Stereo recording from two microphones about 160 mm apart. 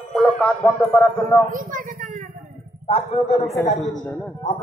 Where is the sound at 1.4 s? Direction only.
60° right (ahead or behind).